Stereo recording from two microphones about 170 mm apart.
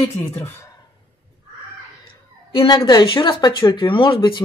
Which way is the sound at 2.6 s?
30° left (ahead or behind).